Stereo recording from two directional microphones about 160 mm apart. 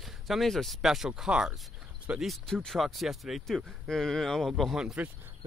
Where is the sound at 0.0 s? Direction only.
Centre (ahead or behind).